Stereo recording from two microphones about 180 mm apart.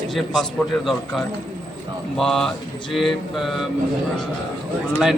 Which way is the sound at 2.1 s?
Centre (ahead or behind).